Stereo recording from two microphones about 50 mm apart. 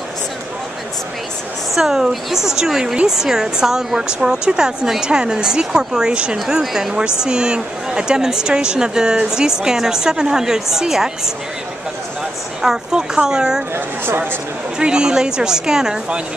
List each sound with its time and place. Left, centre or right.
1.8 s speech: centre
12.6 s speech: centre
13.7 s speech: right
14.8 s speech: centre